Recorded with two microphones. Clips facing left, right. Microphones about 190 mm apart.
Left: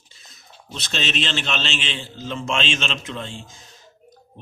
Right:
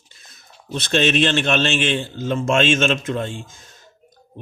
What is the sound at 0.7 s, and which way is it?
Speech, 55° right (ahead or behind).